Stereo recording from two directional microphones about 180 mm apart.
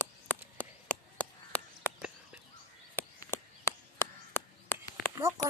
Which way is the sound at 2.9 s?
15° left (ahead or behind).